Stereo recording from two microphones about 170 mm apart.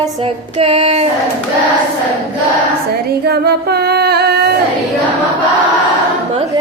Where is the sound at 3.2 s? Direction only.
70° right (ahead or behind).